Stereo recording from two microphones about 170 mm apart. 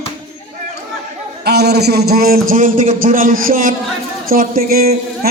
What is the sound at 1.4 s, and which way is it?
A man's voice, 75° right (ahead or behind).